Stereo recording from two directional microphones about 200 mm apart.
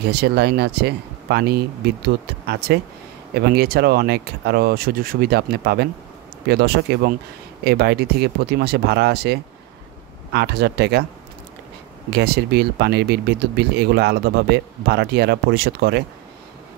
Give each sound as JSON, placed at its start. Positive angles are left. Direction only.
{"t": 0.0, "sound": "speech", "side_deg": -55}
{"t": 12.1, "sound": "speech", "side_deg": -55}